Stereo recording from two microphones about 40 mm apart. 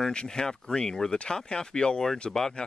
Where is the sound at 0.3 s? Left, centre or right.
Centre.